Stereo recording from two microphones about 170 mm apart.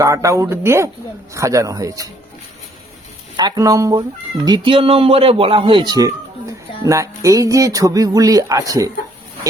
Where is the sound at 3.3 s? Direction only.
25° right (ahead or behind).